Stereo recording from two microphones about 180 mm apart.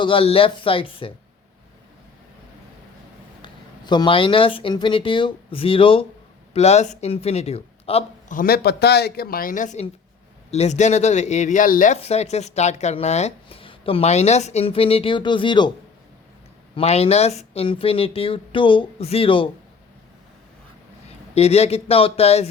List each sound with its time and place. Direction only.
0.0 s speech: 30° left (ahead or behind)
3.4 s speech: 25° left (ahead or behind)
8.3 s speech: 55° left (ahead or behind)
11.9 s speech: 35° left (ahead or behind)
16.7 s speech: 35° left (ahead or behind)
21.3 s speech: 35° left (ahead or behind)